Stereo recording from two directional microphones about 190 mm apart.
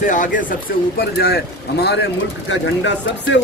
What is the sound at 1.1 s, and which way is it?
Speech, 55° left (ahead or behind).